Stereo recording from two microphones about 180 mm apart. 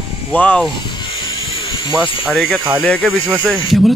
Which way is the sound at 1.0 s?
30° left (ahead or behind).